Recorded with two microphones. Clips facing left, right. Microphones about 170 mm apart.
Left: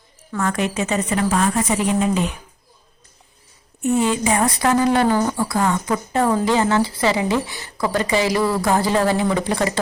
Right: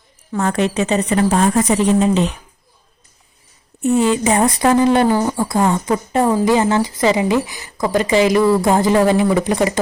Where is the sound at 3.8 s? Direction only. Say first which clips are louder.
Right 4 dB; 20° left (ahead or behind).